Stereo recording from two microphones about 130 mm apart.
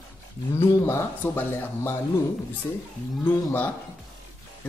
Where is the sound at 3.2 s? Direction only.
15° left (ahead or behind).